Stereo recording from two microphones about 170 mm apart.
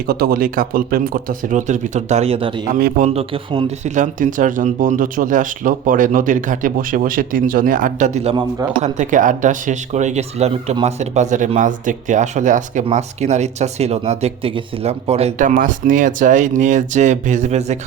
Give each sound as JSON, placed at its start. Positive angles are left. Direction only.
{"t": 0.1, "sound": "speech", "side_deg": -60}
{"t": 15.4, "sound": "speech", "side_deg": -50}